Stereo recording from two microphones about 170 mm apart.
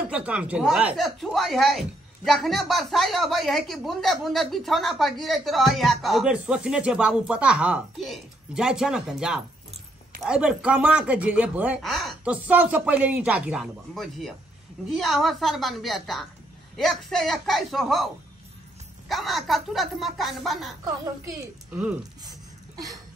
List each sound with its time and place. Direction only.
0.1 s speech: 5° right (ahead or behind)
20.8 s a woman's voice: 20° right (ahead or behind)
22.2 s a sound: 20° right (ahead or behind)